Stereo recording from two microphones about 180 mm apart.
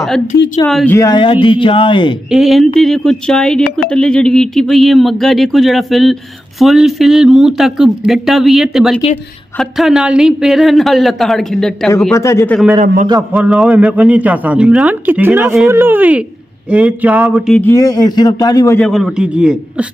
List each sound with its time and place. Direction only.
0.7 s speech: centre (ahead or behind)
0.9 s speech: 20° left (ahead or behind)
2.2 s speech: centre (ahead or behind)
12.1 s speech: 15° left (ahead or behind)
13.3 s a man's voice: 5° right (ahead or behind)
17.6 s speech: 15° left (ahead or behind)
18.8 s speech: centre (ahead or behind)